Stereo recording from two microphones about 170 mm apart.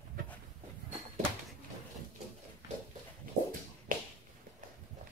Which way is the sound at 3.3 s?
55° right (ahead or behind).